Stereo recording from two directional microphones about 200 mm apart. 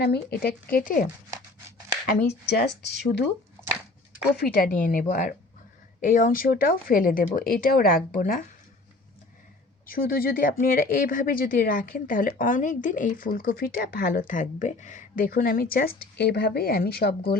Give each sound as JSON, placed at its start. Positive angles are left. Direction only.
{"t": 0.0, "sound": "speech", "side_deg": 50}
{"t": 2.0, "sound": "speech", "side_deg": 50}
{"t": 4.4, "sound": "speech", "side_deg": 45}
{"t": 9.8, "sound": "speech", "side_deg": 45}